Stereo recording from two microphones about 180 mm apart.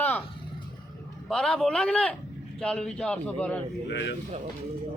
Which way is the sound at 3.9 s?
80° left.